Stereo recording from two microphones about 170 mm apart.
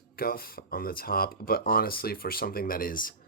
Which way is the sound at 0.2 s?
60° left (ahead or behind).